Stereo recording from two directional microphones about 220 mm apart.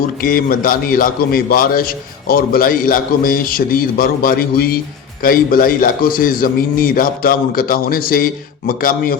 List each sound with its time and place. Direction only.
0.2 s a man's voice: 40° left (ahead or behind)